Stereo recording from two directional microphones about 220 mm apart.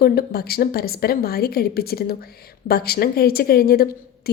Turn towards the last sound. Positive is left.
turn(degrees=45)  # may be behind; listen again after turning